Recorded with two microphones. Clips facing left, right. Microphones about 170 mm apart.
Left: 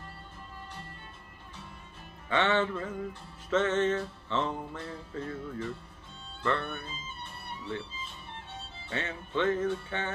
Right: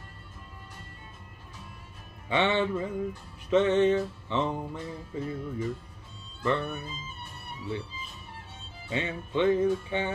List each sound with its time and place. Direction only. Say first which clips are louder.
2.2 s music: right 2 dB; 15° right (ahead or behind)